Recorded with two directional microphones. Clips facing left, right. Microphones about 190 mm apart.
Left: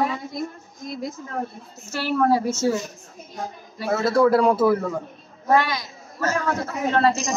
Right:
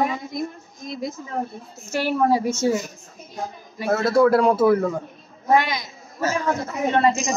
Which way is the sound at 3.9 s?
Centre (ahead or behind).